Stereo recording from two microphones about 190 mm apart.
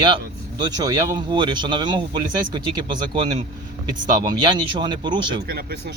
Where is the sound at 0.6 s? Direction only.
20° right (ahead or behind).